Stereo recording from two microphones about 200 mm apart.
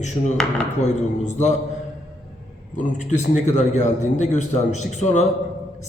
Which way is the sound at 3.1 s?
35° left (ahead or behind).